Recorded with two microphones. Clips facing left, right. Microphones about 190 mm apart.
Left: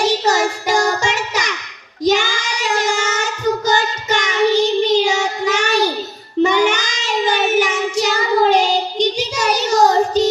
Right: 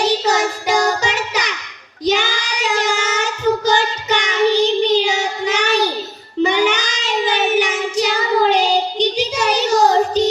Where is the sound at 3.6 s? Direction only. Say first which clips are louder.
Right 1 dB; 45° left (ahead or behind).